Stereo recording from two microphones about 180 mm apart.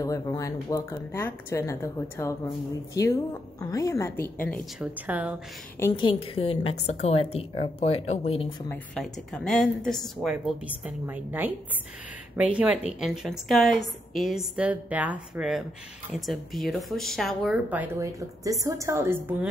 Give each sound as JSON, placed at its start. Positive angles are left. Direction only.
{"t": 0.0, "sound": "speech", "side_deg": 20}
{"t": 4.7, "sound": "a woman's voice", "side_deg": -10}
{"t": 5.9, "sound": "a woman's voice", "side_deg": 30}
{"t": 8.6, "sound": "a woman's voice", "side_deg": 0}
{"t": 17.6, "sound": "a woman's voice", "side_deg": -10}